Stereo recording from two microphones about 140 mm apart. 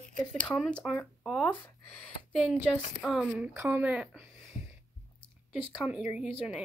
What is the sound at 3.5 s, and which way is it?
Speech, 15° right (ahead or behind).